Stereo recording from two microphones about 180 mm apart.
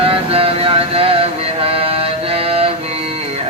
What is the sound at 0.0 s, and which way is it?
Vehicle, 30° right (ahead or behind).